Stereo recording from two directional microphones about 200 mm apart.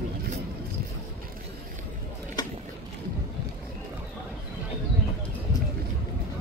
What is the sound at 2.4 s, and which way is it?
Boat, 20° left (ahead or behind).